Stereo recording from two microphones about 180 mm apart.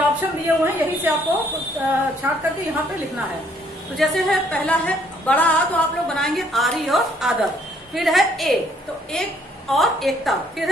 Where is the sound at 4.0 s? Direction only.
Centre (ahead or behind).